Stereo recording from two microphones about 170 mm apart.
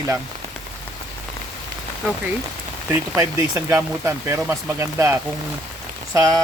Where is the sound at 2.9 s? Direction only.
20° right (ahead or behind).